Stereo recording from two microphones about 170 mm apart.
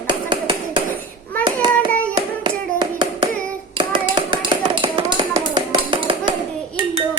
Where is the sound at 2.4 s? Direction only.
30° right (ahead or behind).